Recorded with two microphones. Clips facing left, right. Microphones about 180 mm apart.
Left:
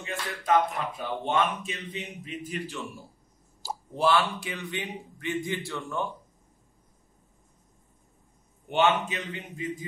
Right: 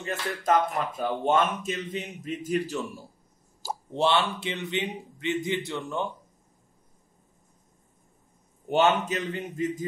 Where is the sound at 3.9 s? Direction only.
25° right (ahead or behind).